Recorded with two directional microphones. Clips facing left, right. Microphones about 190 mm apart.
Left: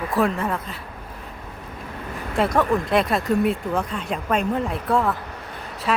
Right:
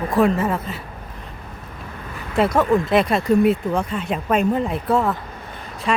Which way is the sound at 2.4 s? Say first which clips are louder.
Right 3 dB; centre (ahead or behind).